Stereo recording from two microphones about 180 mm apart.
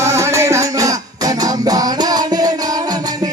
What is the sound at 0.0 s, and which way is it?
Music, 15° right (ahead or behind).